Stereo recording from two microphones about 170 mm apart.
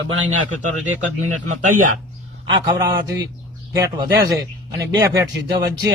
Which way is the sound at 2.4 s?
25° right (ahead or behind).